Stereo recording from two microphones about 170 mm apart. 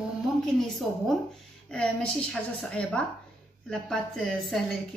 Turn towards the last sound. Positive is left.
turn(degrees=5)  # may be behind; listen again after turning